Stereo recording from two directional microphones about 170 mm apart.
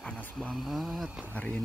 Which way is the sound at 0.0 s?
5° left (ahead or behind).